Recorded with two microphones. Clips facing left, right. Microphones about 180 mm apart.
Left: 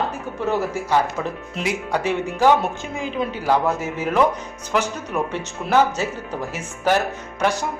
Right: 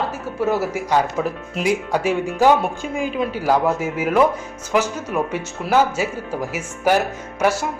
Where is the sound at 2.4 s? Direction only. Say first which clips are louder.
Right 1 dB; 15° right (ahead or behind).